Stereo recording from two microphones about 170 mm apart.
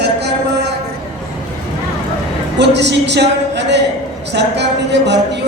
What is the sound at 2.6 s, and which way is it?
Speech, 90° right.